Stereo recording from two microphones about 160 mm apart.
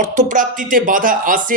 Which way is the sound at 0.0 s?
55° right (ahead or behind).